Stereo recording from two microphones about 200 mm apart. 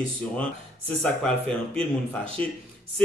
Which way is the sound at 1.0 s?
5° left (ahead or behind).